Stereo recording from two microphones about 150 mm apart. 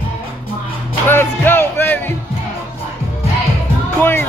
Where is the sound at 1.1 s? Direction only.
15° left (ahead or behind).